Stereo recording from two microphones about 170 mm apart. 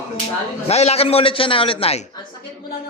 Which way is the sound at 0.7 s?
40° left (ahead or behind).